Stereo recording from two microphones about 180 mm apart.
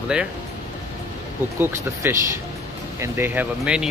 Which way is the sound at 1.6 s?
10° right (ahead or behind).